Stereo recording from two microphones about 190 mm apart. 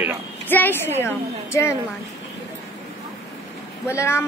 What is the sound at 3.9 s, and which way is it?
Speech, 15° left (ahead or behind).